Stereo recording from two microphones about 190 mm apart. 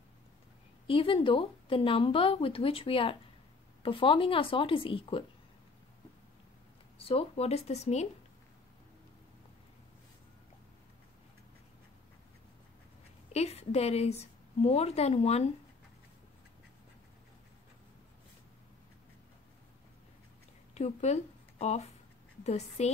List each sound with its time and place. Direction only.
0.8 s speech: 30° left (ahead or behind)
7.0 s speech: 30° left (ahead or behind)
13.3 s a woman's voice: 35° left (ahead or behind)
20.7 s speech: 35° left (ahead or behind)